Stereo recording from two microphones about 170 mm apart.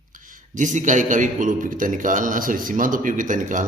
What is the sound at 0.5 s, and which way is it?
A man's voice, 45° right (ahead or behind).